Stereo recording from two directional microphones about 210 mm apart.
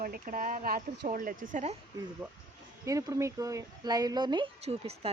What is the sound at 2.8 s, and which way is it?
Speech, 15° right (ahead or behind).